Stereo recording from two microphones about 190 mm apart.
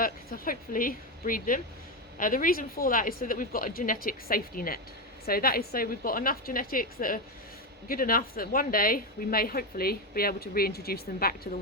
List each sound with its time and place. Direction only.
0.0 s a woman's voice: 50° left (ahead or behind)